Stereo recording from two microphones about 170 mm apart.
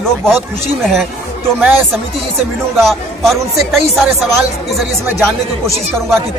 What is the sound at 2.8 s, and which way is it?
Speech, centre (ahead or behind).